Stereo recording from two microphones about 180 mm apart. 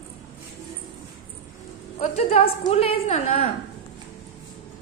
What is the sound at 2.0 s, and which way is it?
A woman's voice, 35° left (ahead or behind).